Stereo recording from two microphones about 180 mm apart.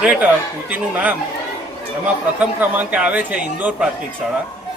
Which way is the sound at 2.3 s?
10° right (ahead or behind).